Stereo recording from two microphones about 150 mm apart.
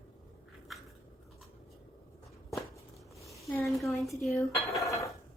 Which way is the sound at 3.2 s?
20° left (ahead or behind).